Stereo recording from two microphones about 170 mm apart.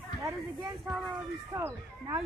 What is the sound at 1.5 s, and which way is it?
Speech, 15° right (ahead or behind).